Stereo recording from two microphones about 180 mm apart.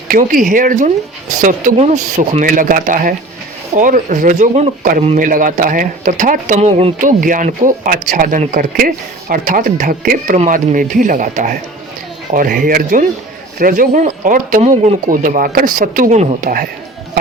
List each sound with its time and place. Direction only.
0.1 s a man's voice: 50° right (ahead or behind)